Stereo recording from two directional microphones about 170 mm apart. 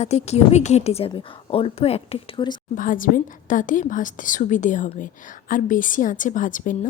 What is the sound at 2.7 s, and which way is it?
A woman's voice, 55° left (ahead or behind).